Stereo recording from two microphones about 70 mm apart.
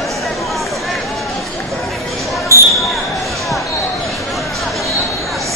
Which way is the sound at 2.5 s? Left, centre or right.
Right.